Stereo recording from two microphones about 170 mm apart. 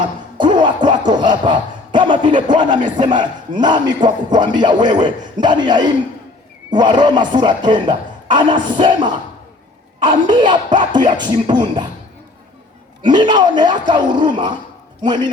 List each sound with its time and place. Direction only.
0.3 s a sound: 25° right (ahead or behind)
3.0 s speech: 25° right (ahead or behind)
13.0 s speech: 25° right (ahead or behind)